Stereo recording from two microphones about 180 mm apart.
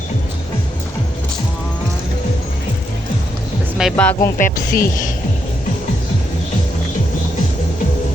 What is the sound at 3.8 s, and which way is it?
Speech, 5° left (ahead or behind).